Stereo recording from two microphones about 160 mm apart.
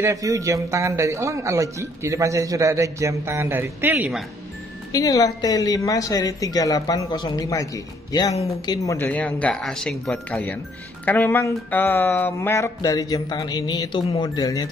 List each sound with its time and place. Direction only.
0.0 s speech: 20° right (ahead or behind)
4.9 s a woman's voice: 20° left (ahead or behind)